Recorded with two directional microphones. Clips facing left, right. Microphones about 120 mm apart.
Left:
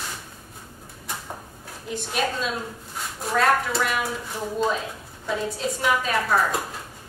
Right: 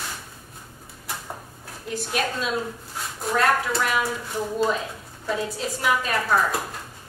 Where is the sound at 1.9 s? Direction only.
Centre (ahead or behind).